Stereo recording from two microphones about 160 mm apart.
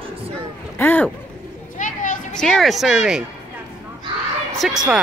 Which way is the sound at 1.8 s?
55° left (ahead or behind).